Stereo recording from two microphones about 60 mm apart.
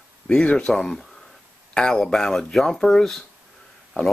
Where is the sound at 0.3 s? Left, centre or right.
Centre.